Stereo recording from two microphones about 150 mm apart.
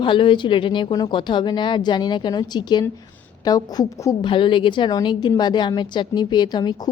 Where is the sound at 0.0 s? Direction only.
35° left (ahead or behind).